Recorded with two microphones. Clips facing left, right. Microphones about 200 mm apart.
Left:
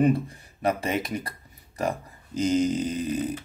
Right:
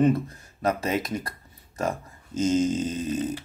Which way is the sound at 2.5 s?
25° right (ahead or behind).